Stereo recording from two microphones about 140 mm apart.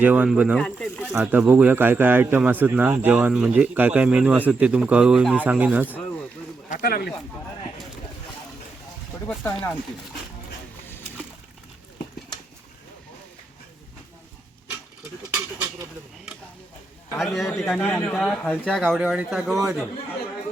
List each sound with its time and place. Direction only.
0.0 s a man's voice: 10° right (ahead or behind)
0.5 s speech: 5° left (ahead or behind)
1.2 s a man's voice: 10° right (ahead or behind)
6.7 s speech: 90° left
9.2 s speech: 15° left (ahead or behind)
15.3 s a sound: 20° right (ahead or behind)
17.2 s a man's voice: centre (ahead or behind)
18.8 s a man's voice: 10° right (ahead or behind)